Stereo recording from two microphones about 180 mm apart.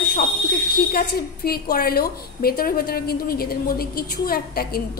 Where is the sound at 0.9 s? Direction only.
55° left (ahead or behind).